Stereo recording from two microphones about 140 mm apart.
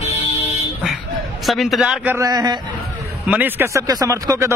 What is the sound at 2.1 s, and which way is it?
Speech, 25° right (ahead or behind).